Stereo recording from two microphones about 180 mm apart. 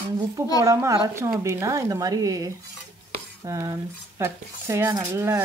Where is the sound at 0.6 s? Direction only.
15° right (ahead or behind).